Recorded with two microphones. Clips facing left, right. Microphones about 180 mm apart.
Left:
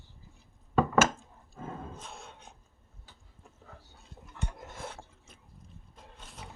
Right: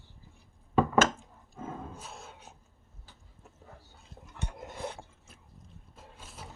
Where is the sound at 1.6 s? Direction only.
5° right (ahead or behind).